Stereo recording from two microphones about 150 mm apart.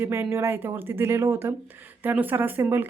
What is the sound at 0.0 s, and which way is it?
Speech, 15° right (ahead or behind).